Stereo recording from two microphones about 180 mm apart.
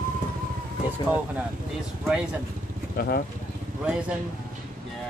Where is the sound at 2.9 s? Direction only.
60° left (ahead or behind).